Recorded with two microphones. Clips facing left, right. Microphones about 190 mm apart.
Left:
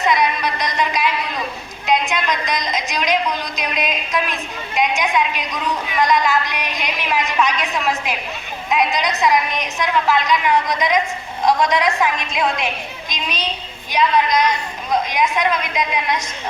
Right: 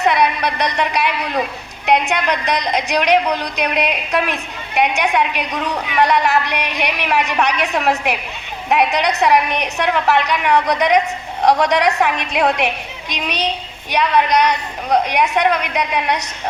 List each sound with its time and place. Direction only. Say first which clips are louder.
0.0 s a woman's voice: right 2 dB; 65° right (ahead or behind)